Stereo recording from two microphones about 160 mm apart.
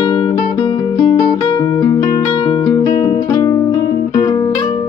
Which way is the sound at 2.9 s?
50° left (ahead or behind).